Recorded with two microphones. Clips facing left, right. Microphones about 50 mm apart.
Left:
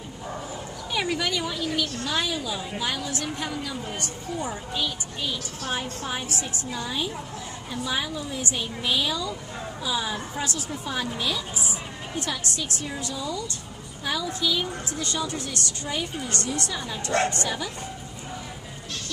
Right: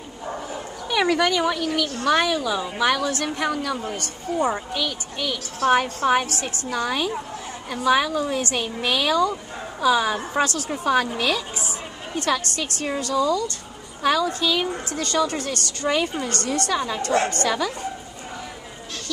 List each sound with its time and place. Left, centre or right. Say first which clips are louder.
0.8 s a woman's voice: right 7 dB; right
4.3 s a woman's voice: right 8 dB; right
4.7 s a woman's voice: right 3 dB; right
12.2 s a woman's voice: right 7 dB; right
14.9 s a woman's voice: right 6 dB; right